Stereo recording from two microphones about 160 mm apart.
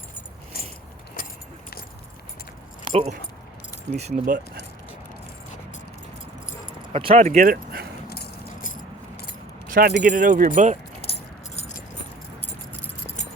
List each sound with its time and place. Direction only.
2.9 s speech: 45° right (ahead or behind)
6.9 s speech: 35° right (ahead or behind)
7.5 s a sound: 75° right (ahead or behind)
8.1 s keys jangling: 65° left (ahead or behind)
9.6 s speech: 60° right (ahead or behind)
11.0 s keys jangling: 40° left (ahead or behind)